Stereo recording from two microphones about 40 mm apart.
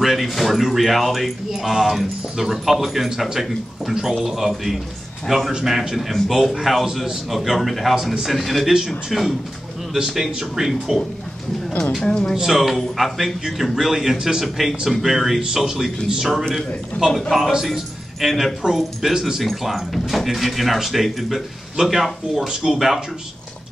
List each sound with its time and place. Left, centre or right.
0.0 s speech: centre
7.9 s speech: centre
8.3 s speech: centre
12.0 s speech: left
12.4 s speech: centre
17.0 s a man's voice: right
17.6 s a man's voice: centre
19.4 s speech: centre